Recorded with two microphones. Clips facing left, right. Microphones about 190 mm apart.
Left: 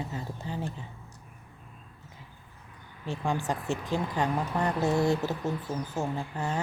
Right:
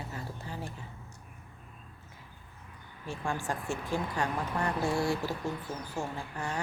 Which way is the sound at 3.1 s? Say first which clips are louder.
Left 4 dB; 20° left (ahead or behind).